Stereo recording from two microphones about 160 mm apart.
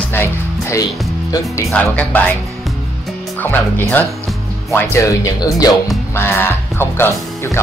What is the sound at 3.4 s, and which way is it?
Speech, 10° left (ahead or behind).